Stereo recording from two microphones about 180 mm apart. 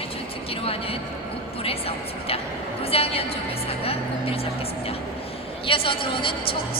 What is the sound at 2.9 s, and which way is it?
Speech, 35° left (ahead or behind).